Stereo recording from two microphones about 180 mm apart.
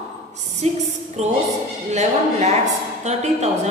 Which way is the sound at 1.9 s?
40° right (ahead or behind).